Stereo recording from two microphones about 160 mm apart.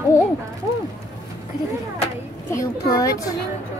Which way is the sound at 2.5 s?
20° left (ahead or behind).